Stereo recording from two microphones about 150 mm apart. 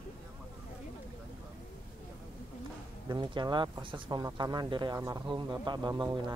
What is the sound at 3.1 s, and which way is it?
Speech, 30° right (ahead or behind).